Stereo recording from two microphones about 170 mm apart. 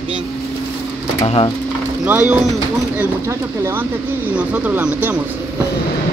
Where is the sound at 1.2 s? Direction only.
30° left (ahead or behind).